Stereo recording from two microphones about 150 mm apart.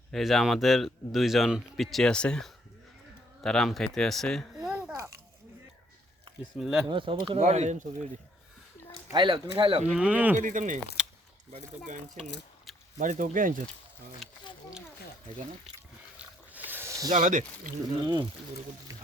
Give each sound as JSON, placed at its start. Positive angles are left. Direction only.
{"t": 0.1, "sound": "speech", "side_deg": 0}
{"t": 6.6, "sound": "speech", "side_deg": -5}
{"t": 6.8, "sound": "speech", "side_deg": -35}
{"t": 7.3, "sound": "speech", "side_deg": -50}
{"t": 9.1, "sound": "speech", "side_deg": -30}
{"t": 9.9, "sound": "speech", "side_deg": -10}
{"t": 10.3, "sound": "speech", "side_deg": -55}
{"t": 13.0, "sound": "speech", "side_deg": -60}
{"t": 16.1, "sound": "a sound", "side_deg": -10}
{"t": 17.2, "sound": "speech", "side_deg": -55}